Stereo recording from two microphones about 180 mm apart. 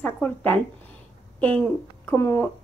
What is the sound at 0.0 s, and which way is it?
Speech, 10° left (ahead or behind).